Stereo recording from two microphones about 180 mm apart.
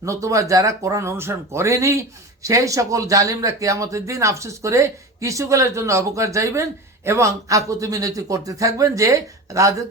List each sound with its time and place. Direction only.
0.0 s speech: 15° right (ahead or behind)